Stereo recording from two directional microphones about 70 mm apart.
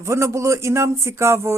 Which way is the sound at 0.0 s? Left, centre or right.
Right.